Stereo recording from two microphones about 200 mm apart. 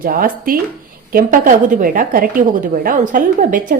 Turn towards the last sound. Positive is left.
turn(degrees=-40)  # may be behind; listen again after turning